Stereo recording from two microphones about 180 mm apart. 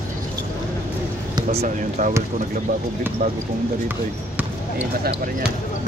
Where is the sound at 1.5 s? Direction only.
45° right (ahead or behind).